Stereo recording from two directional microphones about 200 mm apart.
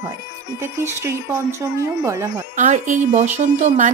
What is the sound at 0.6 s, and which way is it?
Speech, 10° right (ahead or behind).